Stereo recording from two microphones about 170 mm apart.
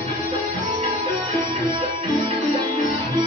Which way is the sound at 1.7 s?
30° right (ahead or behind).